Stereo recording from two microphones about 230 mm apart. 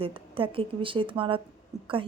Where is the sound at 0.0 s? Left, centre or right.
Right.